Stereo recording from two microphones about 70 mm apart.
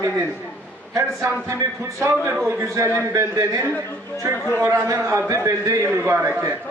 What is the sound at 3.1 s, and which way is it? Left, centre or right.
A man's voice, right.